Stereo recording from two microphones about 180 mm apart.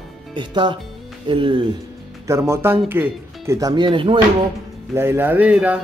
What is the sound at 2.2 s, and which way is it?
Speech, 15° right (ahead or behind).